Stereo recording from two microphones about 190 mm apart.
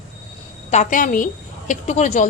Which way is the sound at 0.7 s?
40° left (ahead or behind).